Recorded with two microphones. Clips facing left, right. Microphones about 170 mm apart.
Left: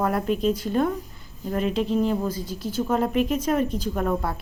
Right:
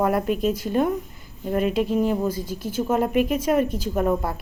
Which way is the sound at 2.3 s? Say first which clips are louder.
Right 2 dB; 50° right (ahead or behind).